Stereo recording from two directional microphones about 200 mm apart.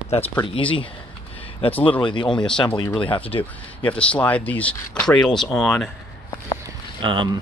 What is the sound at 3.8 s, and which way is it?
Speech, 5° left (ahead or behind).